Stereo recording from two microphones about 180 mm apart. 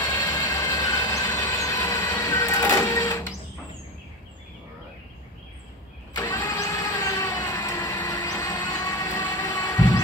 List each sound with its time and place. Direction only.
0.3 s train: 15° left (ahead or behind)
6.1 s vehicle: 15° left (ahead or behind)